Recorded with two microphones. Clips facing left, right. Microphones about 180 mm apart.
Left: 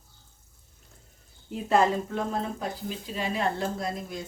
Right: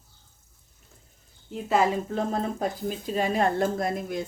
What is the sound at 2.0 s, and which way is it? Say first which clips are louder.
Speech: right 3 dB; 35° right (ahead or behind).